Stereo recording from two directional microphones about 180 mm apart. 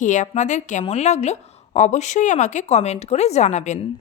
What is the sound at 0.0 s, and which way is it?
A woman's voice, 45° left (ahead or behind).